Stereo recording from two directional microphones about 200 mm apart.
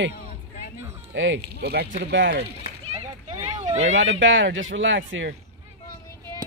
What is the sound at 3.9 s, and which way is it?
Speech, 75° right (ahead or behind).